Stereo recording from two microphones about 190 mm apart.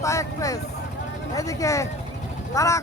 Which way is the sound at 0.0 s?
15° left (ahead or behind).